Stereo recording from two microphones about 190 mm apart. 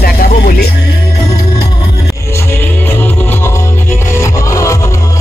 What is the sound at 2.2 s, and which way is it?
Music, 15° left (ahead or behind).